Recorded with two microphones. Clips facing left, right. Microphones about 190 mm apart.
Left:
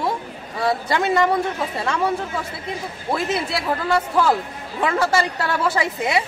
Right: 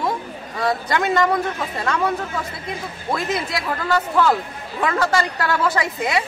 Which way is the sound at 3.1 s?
25° left (ahead or behind).